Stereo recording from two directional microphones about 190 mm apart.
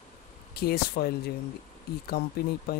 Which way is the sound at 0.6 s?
55° left (ahead or behind).